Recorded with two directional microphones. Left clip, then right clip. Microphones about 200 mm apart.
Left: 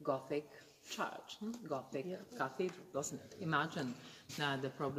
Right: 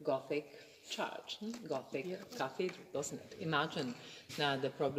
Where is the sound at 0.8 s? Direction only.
25° left (ahead or behind).